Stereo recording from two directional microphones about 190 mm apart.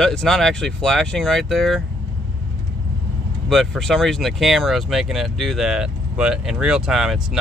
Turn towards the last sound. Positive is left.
turn(degrees=0)  # may be behind; listen again after turning